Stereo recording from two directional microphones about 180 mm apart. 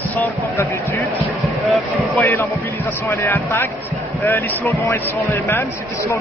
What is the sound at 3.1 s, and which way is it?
Speech, 10° left (ahead or behind).